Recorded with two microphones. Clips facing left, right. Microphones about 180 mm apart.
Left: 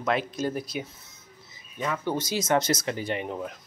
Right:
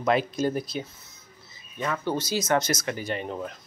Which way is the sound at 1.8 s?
15° left (ahead or behind).